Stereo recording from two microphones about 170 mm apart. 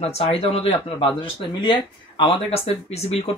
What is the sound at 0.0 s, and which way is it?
Speech, 35° left (ahead or behind).